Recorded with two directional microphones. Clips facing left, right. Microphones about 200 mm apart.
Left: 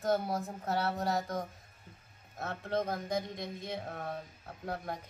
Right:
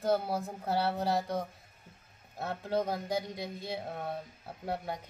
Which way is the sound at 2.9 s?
10° right (ahead or behind).